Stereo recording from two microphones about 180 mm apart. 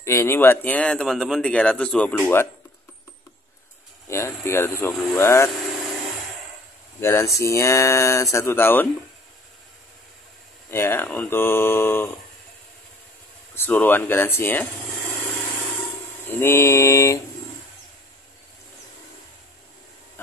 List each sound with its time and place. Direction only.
0.0 s speech: 15° left (ahead or behind)
4.1 s speech: 15° left (ahead or behind)
7.0 s speech: 15° left (ahead or behind)
10.7 s speech: 15° left (ahead or behind)
13.6 s speech: 10° left (ahead or behind)
16.3 s speech: 15° left (ahead or behind)